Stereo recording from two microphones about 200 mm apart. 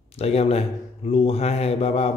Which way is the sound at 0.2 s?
30° left (ahead or behind).